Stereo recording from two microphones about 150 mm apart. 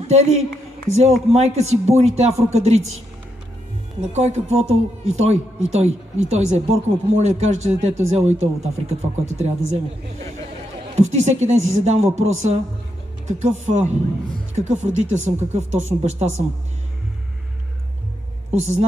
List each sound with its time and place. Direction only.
0.0 s a woman's voice: 45° right (ahead or behind)
4.0 s speech: 50° right (ahead or behind)
11.0 s speech: 50° right (ahead or behind)
18.5 s speech: 45° right (ahead or behind)